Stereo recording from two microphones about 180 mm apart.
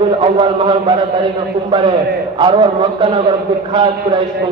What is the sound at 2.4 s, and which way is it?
A man's voice, 25° right (ahead or behind).